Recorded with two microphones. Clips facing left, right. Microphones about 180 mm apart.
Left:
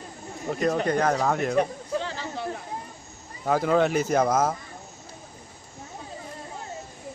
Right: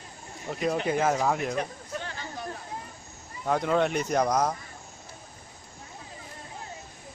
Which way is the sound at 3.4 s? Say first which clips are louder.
Left 3 dB; centre (ahead or behind).